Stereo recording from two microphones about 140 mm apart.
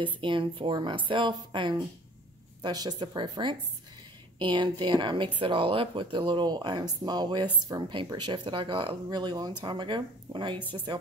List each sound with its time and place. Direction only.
0.0 s speech: 35° right (ahead or behind)